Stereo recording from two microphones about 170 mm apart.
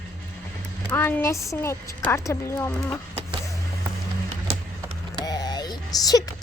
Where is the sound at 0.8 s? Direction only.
10° left (ahead or behind).